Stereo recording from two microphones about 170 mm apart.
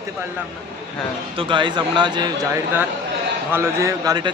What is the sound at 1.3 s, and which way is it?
Speech, 30° right (ahead or behind).